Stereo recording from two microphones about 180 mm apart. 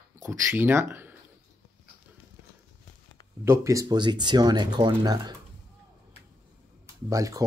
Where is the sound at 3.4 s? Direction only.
15° right (ahead or behind).